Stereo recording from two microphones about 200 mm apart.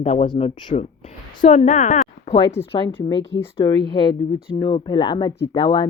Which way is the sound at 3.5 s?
20° left (ahead or behind).